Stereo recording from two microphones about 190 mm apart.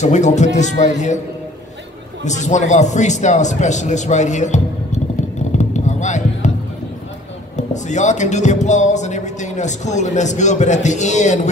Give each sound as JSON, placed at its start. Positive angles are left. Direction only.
{"t": 0.0, "sound": "speech", "side_deg": 40}
{"t": 2.2, "sound": "speech", "side_deg": 40}
{"t": 5.6, "sound": "basketball bounce", "side_deg": 40}
{"t": 7.5, "sound": "speech", "side_deg": 40}